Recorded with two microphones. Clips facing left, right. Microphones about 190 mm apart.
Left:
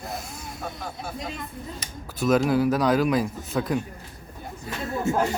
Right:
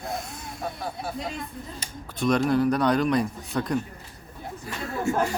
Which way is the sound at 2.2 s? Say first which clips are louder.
Left 1 dB; 5° left (ahead or behind).